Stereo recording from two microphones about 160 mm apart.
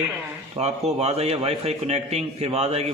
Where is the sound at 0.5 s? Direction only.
40° right (ahead or behind).